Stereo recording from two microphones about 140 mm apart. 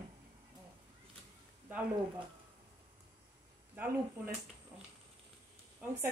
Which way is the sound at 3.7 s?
15° right (ahead or behind).